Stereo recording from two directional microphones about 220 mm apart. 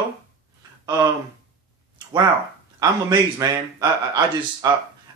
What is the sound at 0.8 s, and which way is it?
Speech, 15° right (ahead or behind).